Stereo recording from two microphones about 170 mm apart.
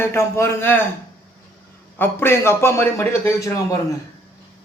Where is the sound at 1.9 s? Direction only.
15° left (ahead or behind).